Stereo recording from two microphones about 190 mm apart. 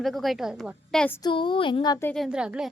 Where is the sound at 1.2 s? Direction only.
25° left (ahead or behind).